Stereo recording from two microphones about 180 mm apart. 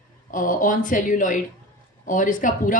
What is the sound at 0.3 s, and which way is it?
Speech, 50° left (ahead or behind).